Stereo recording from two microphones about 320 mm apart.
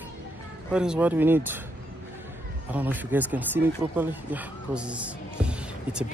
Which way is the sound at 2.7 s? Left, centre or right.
Centre.